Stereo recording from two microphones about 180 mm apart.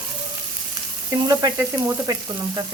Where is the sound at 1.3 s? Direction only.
20° right (ahead or behind).